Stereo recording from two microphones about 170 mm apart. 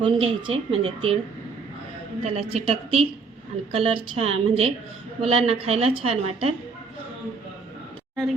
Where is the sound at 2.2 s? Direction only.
35° right (ahead or behind).